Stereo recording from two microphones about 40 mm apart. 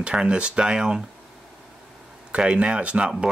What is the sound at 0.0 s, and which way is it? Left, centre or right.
Speech, right.